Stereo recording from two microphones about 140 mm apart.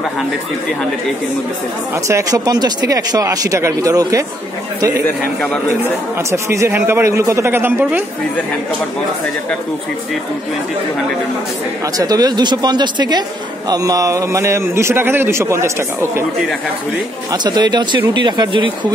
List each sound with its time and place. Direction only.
2.0 s a man's voice: 25° right (ahead or behind)
6.3 s a man's voice: 20° right (ahead or behind)
12.0 s a man's voice: 30° right (ahead or behind)
17.3 s speech: 30° right (ahead or behind)